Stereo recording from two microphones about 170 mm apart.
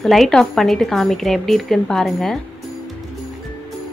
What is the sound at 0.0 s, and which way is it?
A woman's voice, centre (ahead or behind).